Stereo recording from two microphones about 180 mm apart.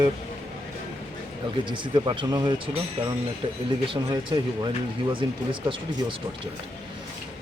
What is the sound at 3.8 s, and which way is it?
Speech, 30° right (ahead or behind).